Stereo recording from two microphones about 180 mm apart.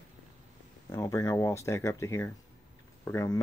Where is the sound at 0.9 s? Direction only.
20° left (ahead or behind).